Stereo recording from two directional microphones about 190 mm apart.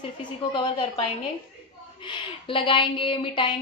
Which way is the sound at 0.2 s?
25° left (ahead or behind).